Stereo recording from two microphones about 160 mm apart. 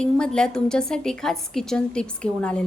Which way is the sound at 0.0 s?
5° left (ahead or behind).